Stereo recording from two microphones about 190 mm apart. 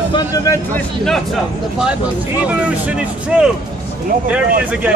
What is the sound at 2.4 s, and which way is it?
A man's voice, 5° right (ahead or behind).